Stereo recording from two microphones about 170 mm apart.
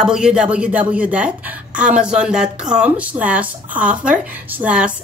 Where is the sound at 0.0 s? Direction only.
5° right (ahead or behind).